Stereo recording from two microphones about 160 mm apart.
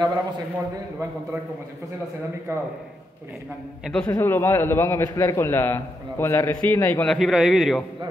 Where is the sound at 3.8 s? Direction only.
5° left (ahead or behind).